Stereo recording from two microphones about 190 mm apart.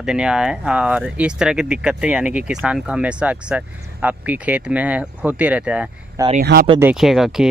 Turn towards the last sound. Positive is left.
turn(degrees=0)  # may be behind; listen again after turning